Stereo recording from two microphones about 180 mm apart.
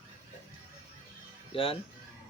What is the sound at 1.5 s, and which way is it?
Speech, 30° left (ahead or behind).